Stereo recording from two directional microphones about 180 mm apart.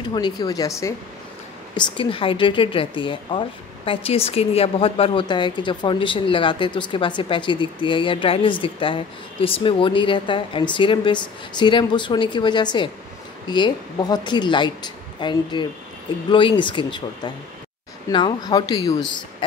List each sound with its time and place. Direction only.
0.1 s a woman's voice: 25° left (ahead or behind)
1.8 s a woman's voice: 30° left (ahead or behind)